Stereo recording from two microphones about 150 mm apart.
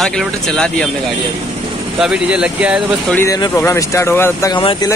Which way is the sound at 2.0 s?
5° right (ahead or behind).